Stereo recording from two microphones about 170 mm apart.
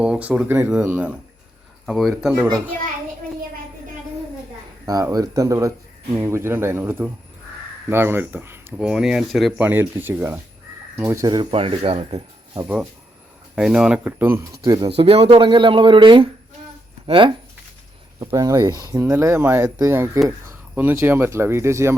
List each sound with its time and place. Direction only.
0.0 s speech: 5° right (ahead or behind)
4.9 s speech: 20° right (ahead or behind)
11.5 s speech: 35° right (ahead or behind)
12.6 s speech: 10° right (ahead or behind)
14.6 s speech: 25° right (ahead or behind)